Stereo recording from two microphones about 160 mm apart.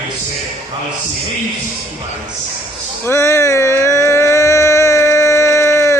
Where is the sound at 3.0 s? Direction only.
15° left (ahead or behind).